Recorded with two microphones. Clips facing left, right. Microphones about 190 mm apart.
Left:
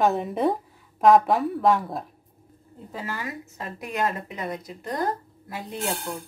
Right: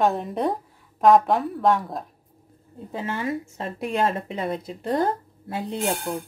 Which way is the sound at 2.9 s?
25° right (ahead or behind).